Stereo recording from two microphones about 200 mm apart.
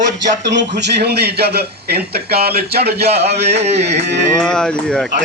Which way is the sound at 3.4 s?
35° right (ahead or behind).